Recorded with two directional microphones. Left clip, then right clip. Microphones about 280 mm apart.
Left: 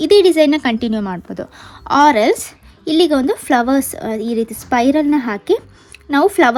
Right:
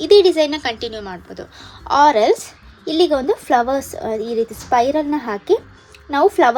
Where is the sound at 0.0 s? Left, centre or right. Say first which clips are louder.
Left 2 dB; left.